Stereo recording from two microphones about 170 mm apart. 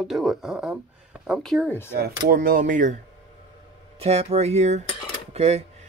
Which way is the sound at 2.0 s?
60° right (ahead or behind).